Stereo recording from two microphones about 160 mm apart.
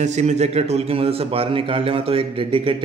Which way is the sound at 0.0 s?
45° right (ahead or behind).